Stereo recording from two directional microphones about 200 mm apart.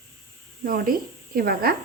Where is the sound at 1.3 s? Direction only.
50° right (ahead or behind).